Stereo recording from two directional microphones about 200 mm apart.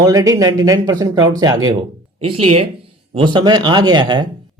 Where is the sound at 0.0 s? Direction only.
20° right (ahead or behind).